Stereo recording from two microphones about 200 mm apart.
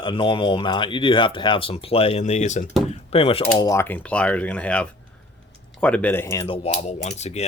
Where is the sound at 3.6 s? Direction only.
15° left (ahead or behind).